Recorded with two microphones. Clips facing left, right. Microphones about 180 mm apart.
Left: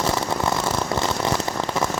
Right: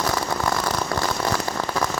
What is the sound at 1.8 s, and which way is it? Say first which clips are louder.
Rain on surface: left 1 dB; 25° left (ahead or behind).